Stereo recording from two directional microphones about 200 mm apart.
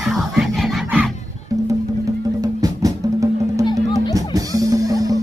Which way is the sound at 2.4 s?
20° right (ahead or behind).